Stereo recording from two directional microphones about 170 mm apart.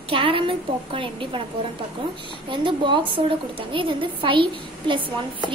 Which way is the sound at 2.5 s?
30° right (ahead or behind).